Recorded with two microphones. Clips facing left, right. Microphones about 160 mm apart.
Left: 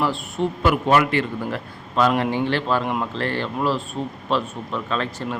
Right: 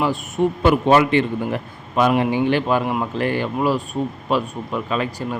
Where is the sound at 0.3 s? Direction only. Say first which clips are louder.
Right 4 dB; 25° right (ahead or behind).